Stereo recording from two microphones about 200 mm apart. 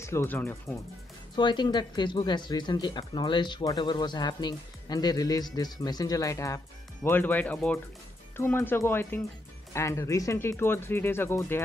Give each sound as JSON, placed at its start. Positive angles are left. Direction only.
{"t": 0.0, "sound": "speech", "side_deg": 15}
{"t": 1.3, "sound": "speech", "side_deg": 20}